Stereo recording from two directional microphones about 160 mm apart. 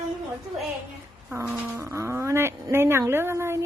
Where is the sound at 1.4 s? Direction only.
10° right (ahead or behind).